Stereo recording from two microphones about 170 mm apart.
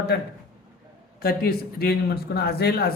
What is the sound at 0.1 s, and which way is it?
A man's voice, 70° left (ahead or behind).